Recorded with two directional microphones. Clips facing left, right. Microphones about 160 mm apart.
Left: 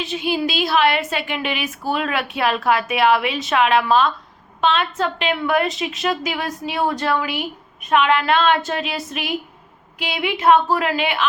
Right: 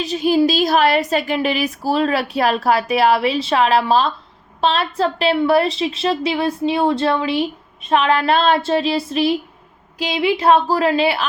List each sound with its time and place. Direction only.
0.0 s a woman's voice: 40° right (ahead or behind)